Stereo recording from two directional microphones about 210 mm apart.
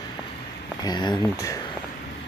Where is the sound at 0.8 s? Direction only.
20° left (ahead or behind).